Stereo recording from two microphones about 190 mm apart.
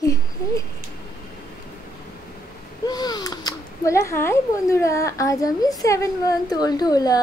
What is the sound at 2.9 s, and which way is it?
A woman's voice, 20° left (ahead or behind).